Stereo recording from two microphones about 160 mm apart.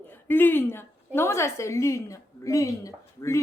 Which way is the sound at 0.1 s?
10° left (ahead or behind).